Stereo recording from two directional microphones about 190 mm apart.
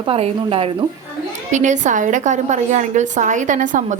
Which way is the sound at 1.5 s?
40° right (ahead or behind).